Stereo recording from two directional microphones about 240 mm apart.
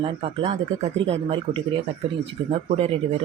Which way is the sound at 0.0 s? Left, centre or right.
Right.